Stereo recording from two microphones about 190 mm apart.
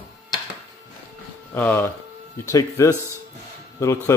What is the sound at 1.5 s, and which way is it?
Speech, 10° left (ahead or behind).